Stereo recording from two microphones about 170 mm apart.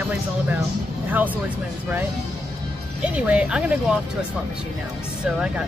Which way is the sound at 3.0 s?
10° right (ahead or behind).